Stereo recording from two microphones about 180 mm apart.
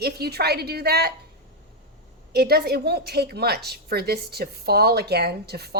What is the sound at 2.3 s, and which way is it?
A woman's voice, 60° right (ahead or behind).